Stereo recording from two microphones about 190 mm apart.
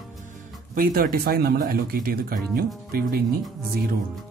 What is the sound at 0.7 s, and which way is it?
Speech, 45° right (ahead or behind).